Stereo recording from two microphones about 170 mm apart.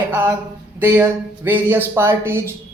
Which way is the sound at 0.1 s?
10° right (ahead or behind).